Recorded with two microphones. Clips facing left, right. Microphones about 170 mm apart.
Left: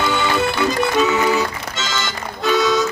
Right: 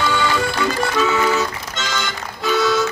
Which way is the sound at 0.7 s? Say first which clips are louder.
Left 2 dB; 20° left (ahead or behind).